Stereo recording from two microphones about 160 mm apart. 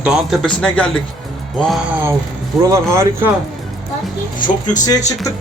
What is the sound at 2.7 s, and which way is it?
Speech, 15° right (ahead or behind).